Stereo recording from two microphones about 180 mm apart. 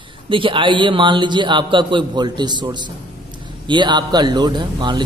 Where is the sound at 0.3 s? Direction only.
30° right (ahead or behind).